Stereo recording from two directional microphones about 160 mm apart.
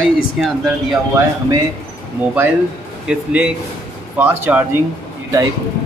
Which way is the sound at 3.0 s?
10° right (ahead or behind).